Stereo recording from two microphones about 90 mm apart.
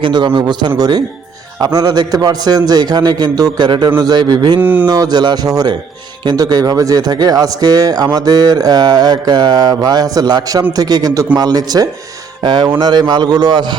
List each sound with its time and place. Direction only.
0.0 s a man's voice: 60° right (ahead or behind)
4.6 s a sound: 20° right (ahead or behind)
4.9 s a man's voice: 45° right (ahead or behind)
12.4 s a man's voice: 60° right (ahead or behind)